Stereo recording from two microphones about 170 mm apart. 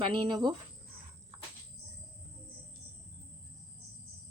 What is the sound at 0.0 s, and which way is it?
Speech, 30° right (ahead or behind).